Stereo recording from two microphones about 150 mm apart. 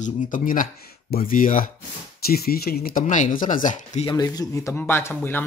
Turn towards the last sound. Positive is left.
turn(degrees=15)  # may be behind; listen again after turning